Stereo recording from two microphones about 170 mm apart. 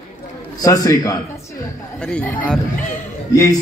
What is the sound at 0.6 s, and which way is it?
Speech, 20° left (ahead or behind).